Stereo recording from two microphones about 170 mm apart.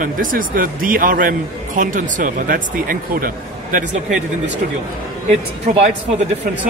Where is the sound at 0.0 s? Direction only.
55° right (ahead or behind).